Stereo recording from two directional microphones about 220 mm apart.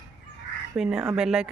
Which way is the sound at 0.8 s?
Centre (ahead or behind).